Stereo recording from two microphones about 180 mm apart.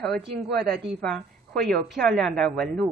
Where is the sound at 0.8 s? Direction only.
5° left (ahead or behind).